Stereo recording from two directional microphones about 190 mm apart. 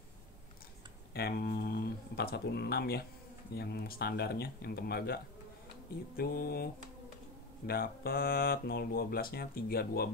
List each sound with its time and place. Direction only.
1.1 s speech: 55° left (ahead or behind)